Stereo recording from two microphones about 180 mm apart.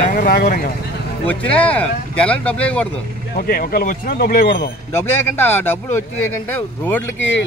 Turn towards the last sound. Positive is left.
turn(degrees=90)